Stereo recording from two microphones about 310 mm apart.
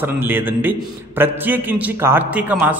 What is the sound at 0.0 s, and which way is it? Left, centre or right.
A man's voice, centre.